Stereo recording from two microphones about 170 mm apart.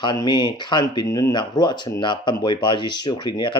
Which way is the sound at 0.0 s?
25° left (ahead or behind).